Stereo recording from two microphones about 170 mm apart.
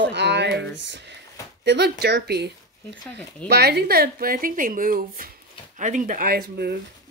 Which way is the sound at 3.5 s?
70° right (ahead or behind).